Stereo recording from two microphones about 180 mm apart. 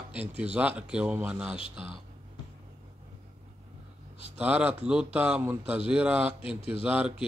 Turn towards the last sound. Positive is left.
turn(degrees=-5)  # may be behind; listen again after turning